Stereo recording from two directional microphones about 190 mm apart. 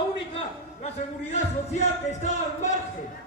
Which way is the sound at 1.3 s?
35° left (ahead or behind).